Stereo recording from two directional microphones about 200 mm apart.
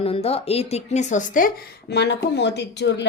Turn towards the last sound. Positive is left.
turn(degrees=60)  # may be behind; listen again after turning